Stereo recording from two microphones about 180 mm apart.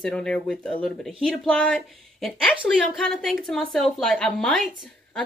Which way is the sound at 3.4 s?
Centre (ahead or behind).